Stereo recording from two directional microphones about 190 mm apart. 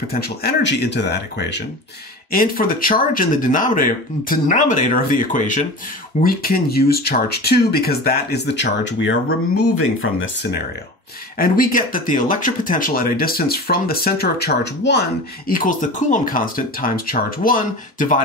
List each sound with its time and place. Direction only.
0.1 s speech: 55° left (ahead or behind)
2.3 s speech: 50° left (ahead or behind); by 9.1 s 70° left (ahead or behind)
11.3 s speech: 50° left (ahead or behind)